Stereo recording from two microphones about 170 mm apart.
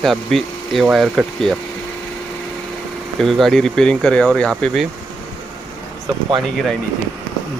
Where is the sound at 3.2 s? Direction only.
Centre (ahead or behind).